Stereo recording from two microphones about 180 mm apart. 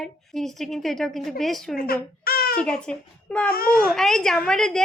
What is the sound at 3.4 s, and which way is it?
Speech, 55° left (ahead or behind).